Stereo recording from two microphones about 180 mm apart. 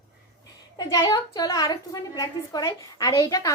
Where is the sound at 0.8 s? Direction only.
20° left (ahead or behind).